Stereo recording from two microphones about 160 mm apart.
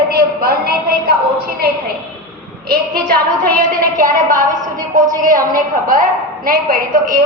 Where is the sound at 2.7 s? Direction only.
70° right (ahead or behind).